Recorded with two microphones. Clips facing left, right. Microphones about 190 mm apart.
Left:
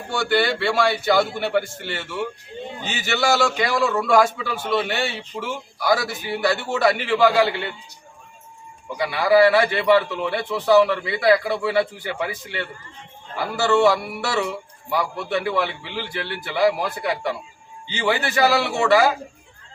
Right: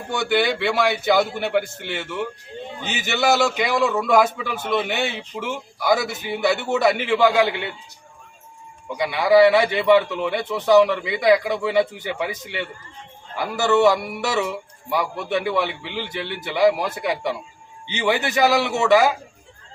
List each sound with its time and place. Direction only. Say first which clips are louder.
0.1 s a man's voice: even; 15° right (ahead or behind)
3.8 s speech: right 1 dB; centre (ahead or behind)
4.0 s a man's voice: even; 15° right (ahead or behind)
8.9 s a man's voice: right 1 dB; 15° right (ahead or behind)